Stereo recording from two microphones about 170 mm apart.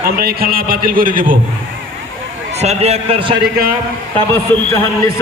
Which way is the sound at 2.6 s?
40° right (ahead or behind).